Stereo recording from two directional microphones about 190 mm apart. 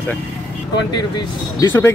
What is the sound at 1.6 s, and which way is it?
Speech, 15° left (ahead or behind).